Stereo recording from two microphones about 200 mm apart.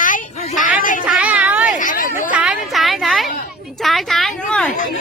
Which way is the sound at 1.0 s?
5° right (ahead or behind).